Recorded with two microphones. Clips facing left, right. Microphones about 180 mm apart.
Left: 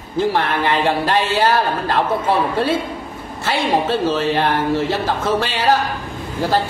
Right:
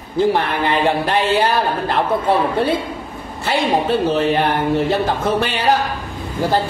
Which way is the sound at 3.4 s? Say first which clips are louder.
Right 1 dB; 20° right (ahead or behind).